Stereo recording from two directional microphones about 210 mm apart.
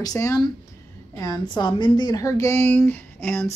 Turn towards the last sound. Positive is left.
turn(degrees=10)  # may be behind; listen again after turning